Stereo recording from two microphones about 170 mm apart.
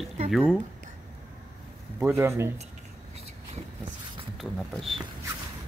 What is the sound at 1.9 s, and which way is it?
Speech, 15° right (ahead or behind).